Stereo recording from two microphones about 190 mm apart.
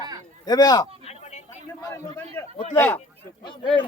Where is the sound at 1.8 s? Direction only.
15° left (ahead or behind).